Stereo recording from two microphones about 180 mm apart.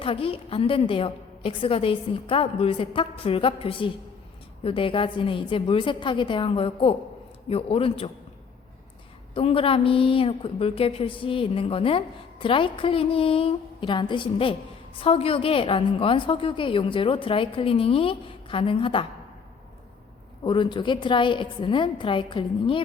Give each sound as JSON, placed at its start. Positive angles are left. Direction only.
{"t": 0.0, "sound": "a woman's voice", "side_deg": 30}
{"t": 9.3, "sound": "a woman's voice", "side_deg": 30}
{"t": 20.4, "sound": "a woman's voice", "side_deg": 25}